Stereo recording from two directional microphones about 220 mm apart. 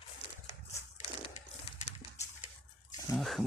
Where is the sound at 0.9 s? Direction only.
30° left (ahead or behind).